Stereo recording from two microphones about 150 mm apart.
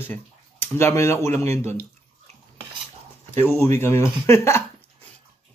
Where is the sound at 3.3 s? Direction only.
15° left (ahead or behind).